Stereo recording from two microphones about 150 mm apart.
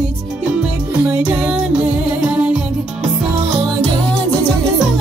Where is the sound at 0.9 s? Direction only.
15° right (ahead or behind).